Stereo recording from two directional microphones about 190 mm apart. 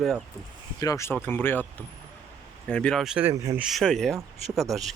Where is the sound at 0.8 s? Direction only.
15° left (ahead or behind); by 3.6 s 15° right (ahead or behind).